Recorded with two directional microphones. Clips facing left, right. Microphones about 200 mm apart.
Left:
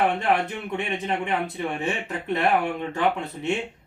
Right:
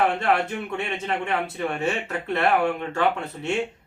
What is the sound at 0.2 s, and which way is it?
Speech, 20° left (ahead or behind).